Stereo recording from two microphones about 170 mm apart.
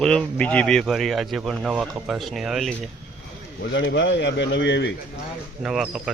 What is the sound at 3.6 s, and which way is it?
Speech, 90° left.